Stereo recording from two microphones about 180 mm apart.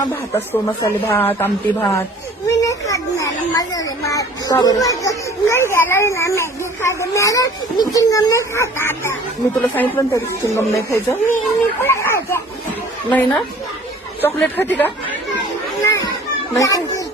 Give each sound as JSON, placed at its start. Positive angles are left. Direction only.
{"t": 0.0, "sound": "speech", "side_deg": 10}
{"t": 15.8, "sound": "children playing", "side_deg": 20}
{"t": 16.6, "sound": "speech", "side_deg": 20}